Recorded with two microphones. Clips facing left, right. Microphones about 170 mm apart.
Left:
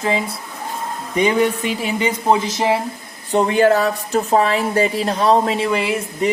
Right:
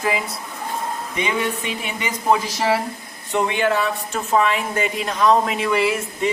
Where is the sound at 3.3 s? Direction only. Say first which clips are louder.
Left 6 dB; 35° left (ahead or behind).